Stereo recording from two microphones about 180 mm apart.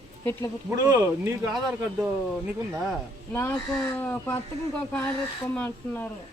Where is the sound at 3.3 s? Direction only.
10° left (ahead or behind).